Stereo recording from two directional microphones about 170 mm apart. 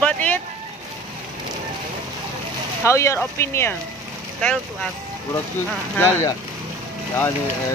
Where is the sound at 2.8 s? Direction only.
15° left (ahead or behind).